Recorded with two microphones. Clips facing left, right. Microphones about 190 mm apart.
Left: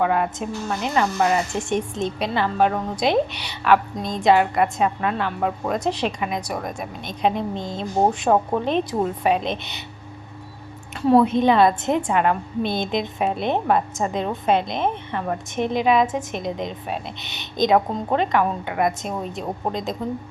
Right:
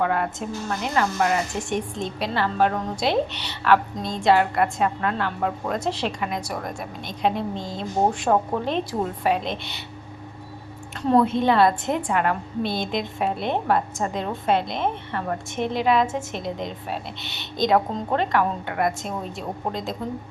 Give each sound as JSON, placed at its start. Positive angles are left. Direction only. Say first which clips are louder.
{"t": 0.0, "sound": "a woman's voice", "louder": "left 3 dB", "side_deg": 15}
{"t": 11.0, "sound": "a woman's voice", "louder": "left 3 dB", "side_deg": 10}